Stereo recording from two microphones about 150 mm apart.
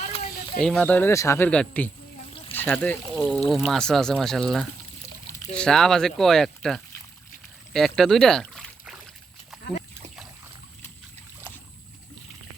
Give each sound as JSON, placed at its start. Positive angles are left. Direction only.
{"t": 0.0, "sound": "mechanisms", "side_deg": 50}
{"t": 0.6, "sound": "speech", "side_deg": 5}
{"t": 1.5, "sound": "speech", "side_deg": 10}
{"t": 7.7, "sound": "rowboat", "side_deg": 0}